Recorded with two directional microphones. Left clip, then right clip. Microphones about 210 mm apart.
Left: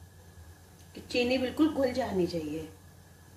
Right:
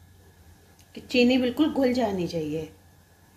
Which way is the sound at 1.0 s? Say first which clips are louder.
Right 7 dB; 45° right (ahead or behind).